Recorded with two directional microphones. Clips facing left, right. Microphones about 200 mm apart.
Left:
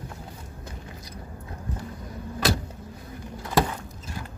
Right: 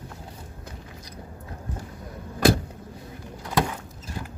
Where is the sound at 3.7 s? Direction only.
10° right (ahead or behind).